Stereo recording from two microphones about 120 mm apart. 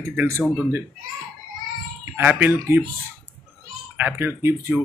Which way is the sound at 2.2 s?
15° right (ahead or behind).